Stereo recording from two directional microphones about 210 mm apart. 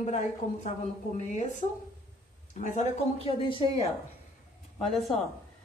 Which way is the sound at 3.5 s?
25° left (ahead or behind).